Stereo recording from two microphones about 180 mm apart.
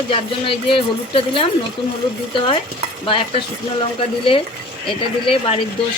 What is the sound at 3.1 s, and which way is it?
Speech, 30° left (ahead or behind).